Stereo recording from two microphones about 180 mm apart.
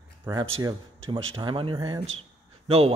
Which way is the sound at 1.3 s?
30° right (ahead or behind).